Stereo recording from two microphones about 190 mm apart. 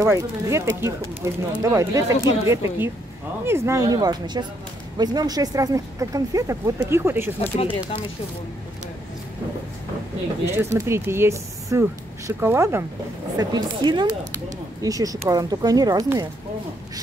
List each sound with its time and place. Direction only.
0.0 s speech: 15° right (ahead or behind)
10.4 s speech: 15° right (ahead or behind)